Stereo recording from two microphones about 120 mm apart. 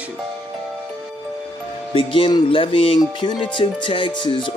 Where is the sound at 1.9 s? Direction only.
45° left (ahead or behind).